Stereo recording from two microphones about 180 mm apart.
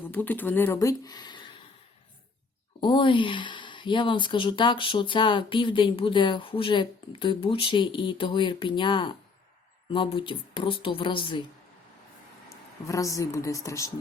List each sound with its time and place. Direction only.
0.1 s speech: 10° left (ahead or behind)
2.8 s speech: 25° left (ahead or behind)
12.9 s speech: 20° left (ahead or behind)